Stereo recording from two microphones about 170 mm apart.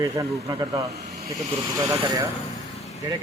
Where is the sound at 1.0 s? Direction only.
40° right (ahead or behind).